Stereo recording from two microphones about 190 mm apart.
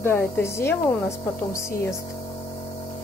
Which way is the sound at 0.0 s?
15° left (ahead or behind).